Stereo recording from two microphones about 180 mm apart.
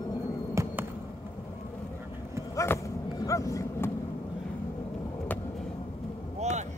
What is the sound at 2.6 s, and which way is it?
Dog, 15° left (ahead or behind).